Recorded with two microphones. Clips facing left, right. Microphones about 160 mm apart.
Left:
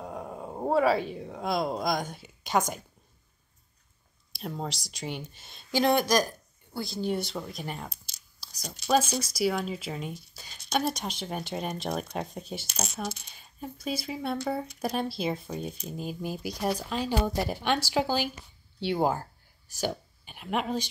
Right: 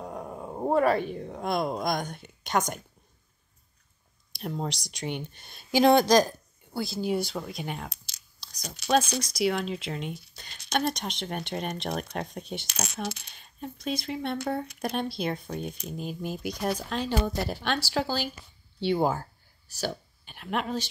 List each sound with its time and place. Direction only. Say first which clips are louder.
0.0 s dog: right 1 dB; 5° left (ahead or behind)
1.1 s speech: right 1 dB; 5° left (ahead or behind)
4.3 s speech: right 2 dB; centre (ahead or behind)
5.7 s speech: right 4 dB; 20° right (ahead or behind)
6.7 s speech: right 2 dB; 5° right (ahead or behind)
7.9 s clicking: right 1 dB; 90° right
8.4 s a sound: even; 5° left (ahead or behind)
8.8 s speech: even; 5° left (ahead or behind)
19.8 s a sound: left 1 dB; 15° left (ahead or behind)
20.3 s speech: left 1 dB; 5° left (ahead or behind)